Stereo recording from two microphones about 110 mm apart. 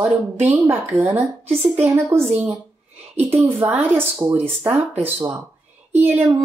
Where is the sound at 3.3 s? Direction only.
20° right (ahead or behind).